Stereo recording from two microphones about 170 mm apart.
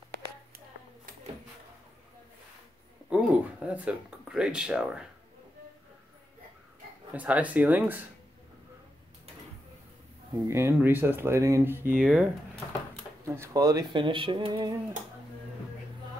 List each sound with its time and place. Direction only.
3.1 s speech: 5° right (ahead or behind)
7.2 s speech: 10° right (ahead or behind)
10.5 s speech: 15° right (ahead or behind)
13.2 s speech: 15° right (ahead or behind)